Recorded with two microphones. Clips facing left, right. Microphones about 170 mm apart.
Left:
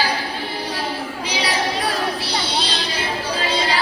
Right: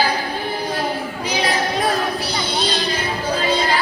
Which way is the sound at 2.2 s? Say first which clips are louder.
Right 2 dB; 50° right (ahead or behind).